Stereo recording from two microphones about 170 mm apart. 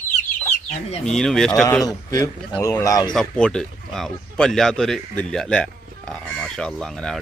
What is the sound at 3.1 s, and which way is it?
Speech, 5° left (ahead or behind).